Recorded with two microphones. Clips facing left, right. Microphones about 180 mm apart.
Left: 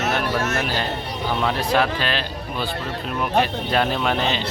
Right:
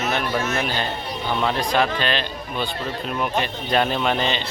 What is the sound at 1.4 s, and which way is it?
Speech, 5° left (ahead or behind).